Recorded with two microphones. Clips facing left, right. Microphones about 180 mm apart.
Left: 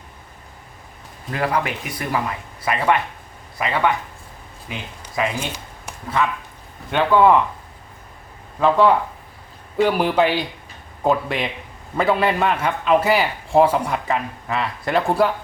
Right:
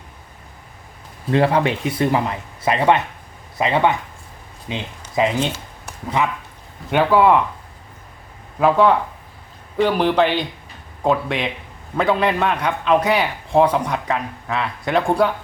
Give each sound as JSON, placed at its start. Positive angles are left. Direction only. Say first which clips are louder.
{"t": 1.3, "sound": "speech", "louder": "right 6 dB", "side_deg": -25}
{"t": 6.9, "sound": "a man's voice", "louder": "even", "side_deg": -5}
{"t": 8.6, "sound": "a man's voice", "louder": "right 1 dB", "side_deg": 0}